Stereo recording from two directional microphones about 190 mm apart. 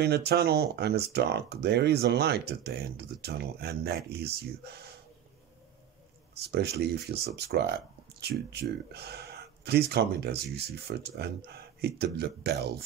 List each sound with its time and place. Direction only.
0.0 s speech: 60° right (ahead or behind)
6.3 s speech: 60° right (ahead or behind)